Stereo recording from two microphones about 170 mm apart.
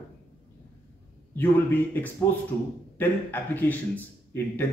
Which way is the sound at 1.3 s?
10° left (ahead or behind).